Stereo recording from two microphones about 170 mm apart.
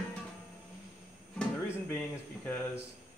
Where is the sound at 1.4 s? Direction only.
10° left (ahead or behind).